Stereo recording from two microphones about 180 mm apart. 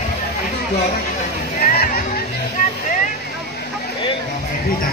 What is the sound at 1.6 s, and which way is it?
Speech, 55° left (ahead or behind).